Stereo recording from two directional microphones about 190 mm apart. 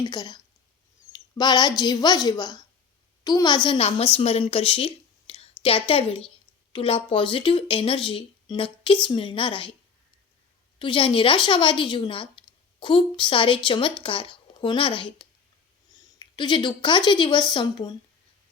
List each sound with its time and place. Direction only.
0.0 s speech: 20° left (ahead or behind)
1.1 s a sound: 20° left (ahead or behind)
1.8 s a woman's voice: 20° left (ahead or behind)
10.8 s speech: 25° left (ahead or behind)
16.1 s a woman's voice: 25° left (ahead or behind)